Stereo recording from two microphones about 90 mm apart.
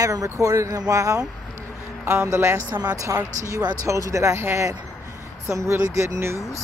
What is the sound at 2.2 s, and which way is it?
Speech, 30° right (ahead or behind).